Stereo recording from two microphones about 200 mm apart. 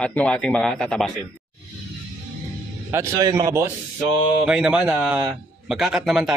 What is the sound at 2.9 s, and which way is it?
Speech, 15° right (ahead or behind).